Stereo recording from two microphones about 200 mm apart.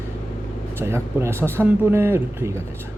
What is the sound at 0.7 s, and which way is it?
Speech, 10° right (ahead or behind).